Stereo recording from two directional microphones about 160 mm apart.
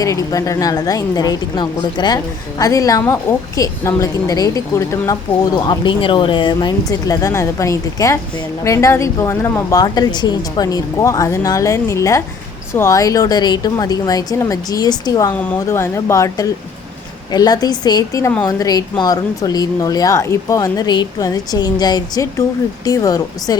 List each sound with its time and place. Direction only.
0.0 s a woman's voice: 20° left (ahead or behind)